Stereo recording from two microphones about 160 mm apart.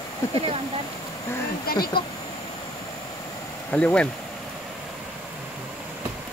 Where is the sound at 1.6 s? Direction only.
70° left (ahead or behind).